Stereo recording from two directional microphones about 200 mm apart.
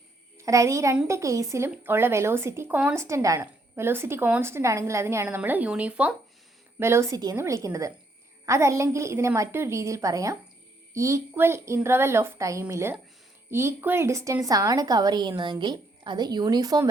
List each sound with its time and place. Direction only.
0.3 s a child's voice: 15° right (ahead or behind)